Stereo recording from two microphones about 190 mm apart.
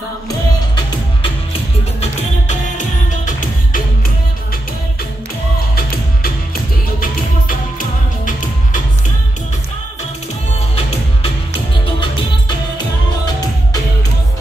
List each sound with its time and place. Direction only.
2.0 s music: 40° left (ahead or behind)
5.8 s music: 50° left (ahead or behind)
11.8 s music: 25° left (ahead or behind)